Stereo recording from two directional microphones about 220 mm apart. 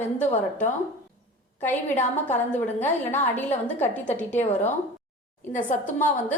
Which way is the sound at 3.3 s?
10° left (ahead or behind).